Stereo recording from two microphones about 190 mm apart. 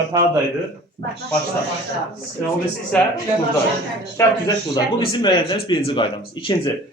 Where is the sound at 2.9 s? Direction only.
5° left (ahead or behind).